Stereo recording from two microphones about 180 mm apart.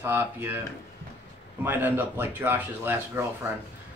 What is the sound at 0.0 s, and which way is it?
Speech, 10° right (ahead or behind).